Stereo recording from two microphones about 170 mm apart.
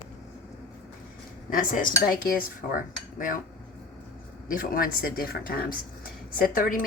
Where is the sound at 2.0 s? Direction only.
55° left (ahead or behind).